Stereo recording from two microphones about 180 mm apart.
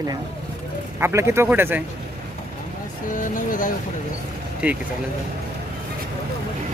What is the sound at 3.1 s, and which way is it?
Speech, 45° left (ahead or behind).